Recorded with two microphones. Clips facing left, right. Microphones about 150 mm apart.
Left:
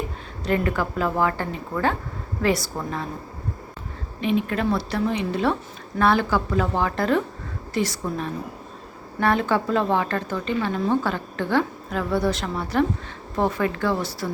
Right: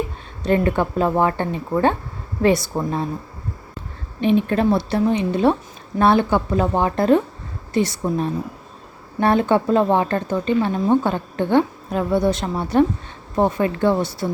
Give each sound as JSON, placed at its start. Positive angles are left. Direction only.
{"t": 0.4, "sound": "speech", "side_deg": -25}
{"t": 4.2, "sound": "speech", "side_deg": -30}